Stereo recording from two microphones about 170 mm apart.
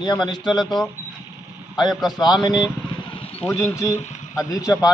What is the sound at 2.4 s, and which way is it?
Speech, 25° left (ahead or behind).